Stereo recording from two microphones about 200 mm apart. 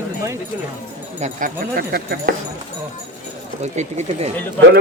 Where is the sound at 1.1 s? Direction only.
40° right (ahead or behind).